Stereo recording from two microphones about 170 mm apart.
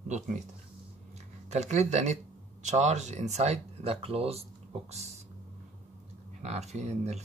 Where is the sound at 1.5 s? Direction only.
40° right (ahead or behind).